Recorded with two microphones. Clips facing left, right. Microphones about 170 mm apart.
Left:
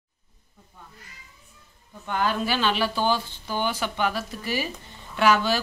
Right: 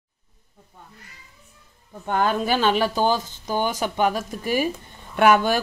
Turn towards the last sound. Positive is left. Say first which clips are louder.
# right 4 dB
turn(degrees=-55)  # may be behind; listen again after turning